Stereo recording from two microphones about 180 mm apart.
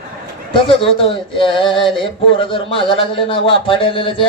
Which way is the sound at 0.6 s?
30° left (ahead or behind).